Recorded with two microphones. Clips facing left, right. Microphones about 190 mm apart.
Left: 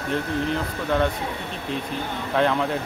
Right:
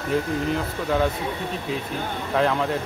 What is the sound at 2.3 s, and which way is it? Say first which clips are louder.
Speech: even; centre (ahead or behind).